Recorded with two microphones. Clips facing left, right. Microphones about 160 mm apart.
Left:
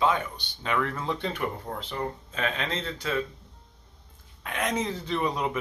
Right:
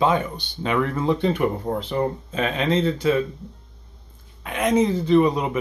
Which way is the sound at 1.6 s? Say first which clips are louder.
Right 9 dB; 25° right (ahead or behind).